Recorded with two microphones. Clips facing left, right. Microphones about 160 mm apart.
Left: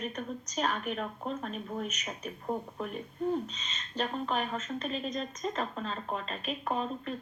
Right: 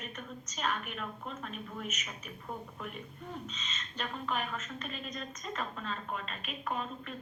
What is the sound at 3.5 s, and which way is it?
A woman's voice, 35° left (ahead or behind).